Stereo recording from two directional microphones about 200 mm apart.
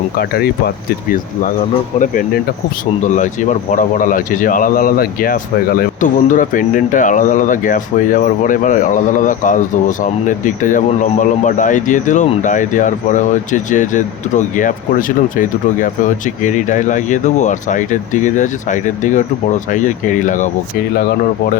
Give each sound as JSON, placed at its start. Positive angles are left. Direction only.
{"t": 0.2, "sound": "speech", "side_deg": 50}
{"t": 2.0, "sound": "speech", "side_deg": 45}
{"t": 3.7, "sound": "speech", "side_deg": 40}